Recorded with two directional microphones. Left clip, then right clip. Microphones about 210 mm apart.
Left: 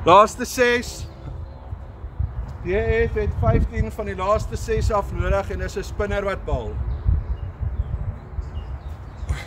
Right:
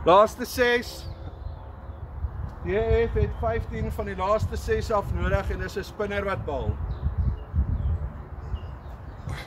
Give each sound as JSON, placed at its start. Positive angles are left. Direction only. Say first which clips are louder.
{"t": 0.0, "sound": "speech", "louder": "left 4 dB", "side_deg": 30}
{"t": 2.6, "sound": "speech", "louder": "left 3 dB", "side_deg": 25}